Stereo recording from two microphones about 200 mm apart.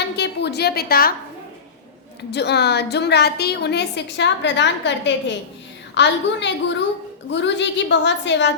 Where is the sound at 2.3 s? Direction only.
60° left (ahead or behind).